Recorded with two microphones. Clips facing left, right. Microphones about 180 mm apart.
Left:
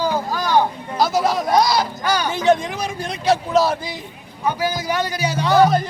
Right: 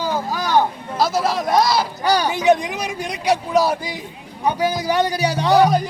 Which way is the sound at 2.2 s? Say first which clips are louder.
Left 2 dB; 15° right (ahead or behind).